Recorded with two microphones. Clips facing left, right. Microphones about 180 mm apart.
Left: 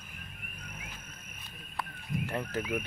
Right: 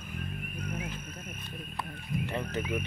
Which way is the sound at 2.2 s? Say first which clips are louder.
Even; 5° left (ahead or behind).